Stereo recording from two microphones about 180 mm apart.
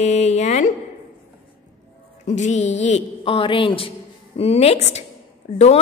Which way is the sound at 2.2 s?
40° left (ahead or behind).